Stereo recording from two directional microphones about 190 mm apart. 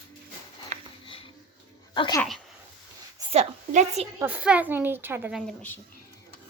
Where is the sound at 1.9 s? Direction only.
20° left (ahead or behind).